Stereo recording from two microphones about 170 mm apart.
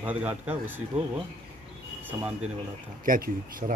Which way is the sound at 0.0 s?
10° right (ahead or behind).